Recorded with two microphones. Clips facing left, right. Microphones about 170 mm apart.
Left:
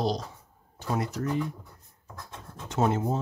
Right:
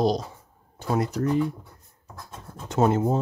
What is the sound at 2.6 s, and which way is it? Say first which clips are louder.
Speech: right 5 dB; 50° right (ahead or behind).